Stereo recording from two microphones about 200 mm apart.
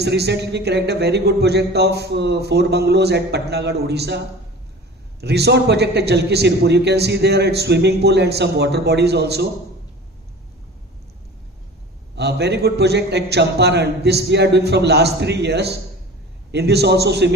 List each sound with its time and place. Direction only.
0.0 s a man's voice: 55° right (ahead or behind)
5.2 s a man's voice: 55° right (ahead or behind)
12.2 s a man's voice: 55° right (ahead or behind)